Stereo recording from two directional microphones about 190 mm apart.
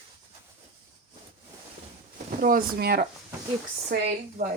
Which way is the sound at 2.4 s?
50° right (ahead or behind).